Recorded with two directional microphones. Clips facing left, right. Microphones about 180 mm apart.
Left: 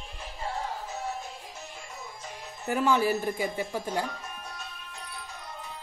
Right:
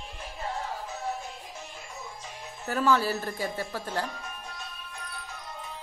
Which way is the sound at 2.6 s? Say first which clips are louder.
Left 1 dB; 15° left (ahead or behind).